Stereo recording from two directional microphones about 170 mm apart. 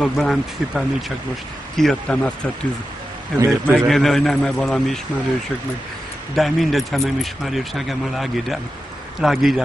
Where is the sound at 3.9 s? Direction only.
Centre (ahead or behind).